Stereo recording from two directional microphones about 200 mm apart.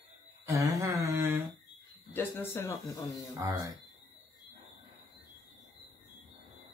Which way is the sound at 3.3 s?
15° right (ahead or behind).